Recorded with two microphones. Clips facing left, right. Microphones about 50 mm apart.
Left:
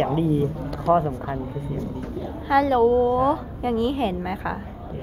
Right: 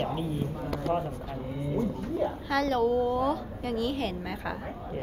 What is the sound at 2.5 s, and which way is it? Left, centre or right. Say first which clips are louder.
A woman's voice: left 9 dB; centre.